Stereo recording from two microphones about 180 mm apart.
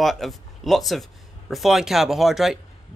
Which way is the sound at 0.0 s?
Centre (ahead or behind).